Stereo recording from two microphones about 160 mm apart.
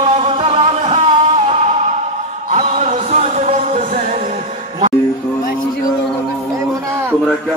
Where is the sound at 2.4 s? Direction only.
55° right (ahead or behind).